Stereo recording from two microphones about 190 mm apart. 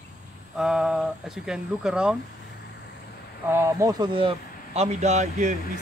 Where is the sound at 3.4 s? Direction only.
15° right (ahead or behind); by 5.5 s 40° right (ahead or behind).